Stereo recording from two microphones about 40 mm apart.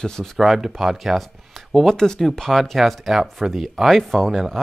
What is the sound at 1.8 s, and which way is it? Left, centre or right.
Speech, centre.